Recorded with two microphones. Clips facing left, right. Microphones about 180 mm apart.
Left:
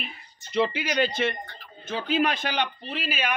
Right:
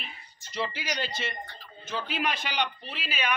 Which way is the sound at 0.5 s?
55° left (ahead or behind).